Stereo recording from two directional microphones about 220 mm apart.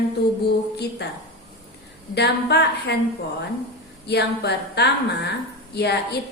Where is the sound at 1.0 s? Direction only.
50° left (ahead or behind).